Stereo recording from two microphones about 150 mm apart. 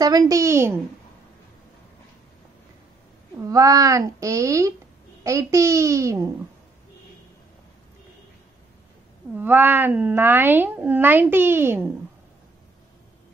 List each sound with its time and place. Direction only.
0.0 s speech: 25° right (ahead or behind)
3.4 s speech: 25° right (ahead or behind)
9.3 s speech: 10° right (ahead or behind)